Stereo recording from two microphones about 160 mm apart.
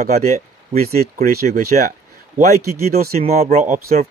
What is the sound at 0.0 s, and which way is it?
Speech, 50° right (ahead or behind).